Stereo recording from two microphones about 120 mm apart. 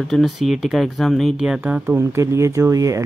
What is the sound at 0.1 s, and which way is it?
Speech, centre (ahead or behind).